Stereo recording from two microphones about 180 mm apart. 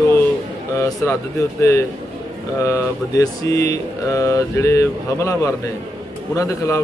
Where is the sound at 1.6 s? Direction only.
15° left (ahead or behind).